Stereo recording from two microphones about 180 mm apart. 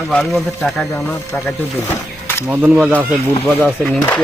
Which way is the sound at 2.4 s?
10° right (ahead or behind).